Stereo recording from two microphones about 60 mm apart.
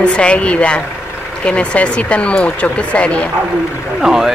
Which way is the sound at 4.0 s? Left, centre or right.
Centre.